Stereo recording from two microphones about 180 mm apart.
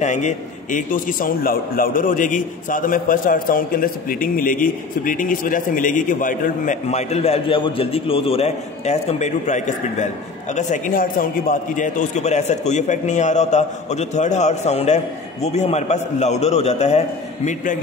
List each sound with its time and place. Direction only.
0.0 s a man's voice: 40° left (ahead or behind)